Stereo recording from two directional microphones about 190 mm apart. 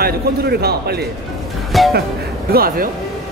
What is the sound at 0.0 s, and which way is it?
Speech, 55° right (ahead or behind).